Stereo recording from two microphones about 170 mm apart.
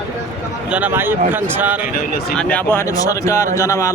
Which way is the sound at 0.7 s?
10° right (ahead or behind).